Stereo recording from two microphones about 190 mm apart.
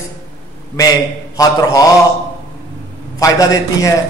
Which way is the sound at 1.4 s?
20° left (ahead or behind).